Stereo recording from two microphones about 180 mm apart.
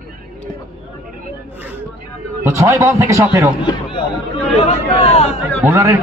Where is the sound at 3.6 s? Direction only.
25° left (ahead or behind).